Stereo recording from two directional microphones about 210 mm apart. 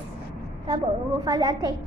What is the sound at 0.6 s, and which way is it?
A woman's voice, 20° right (ahead or behind).